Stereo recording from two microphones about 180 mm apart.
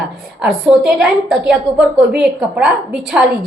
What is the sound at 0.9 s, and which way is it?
A woman's voice, 5° right (ahead or behind).